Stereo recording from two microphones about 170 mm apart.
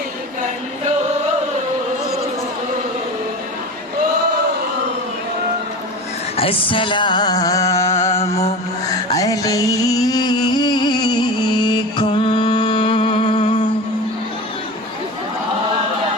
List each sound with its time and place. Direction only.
6.3 s a sound: 35° left (ahead or behind)
7.9 s music: 40° left (ahead or behind)
9.1 s music: 20° left (ahead or behind)